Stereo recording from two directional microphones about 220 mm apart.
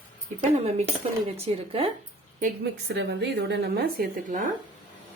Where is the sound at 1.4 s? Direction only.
25° right (ahead or behind).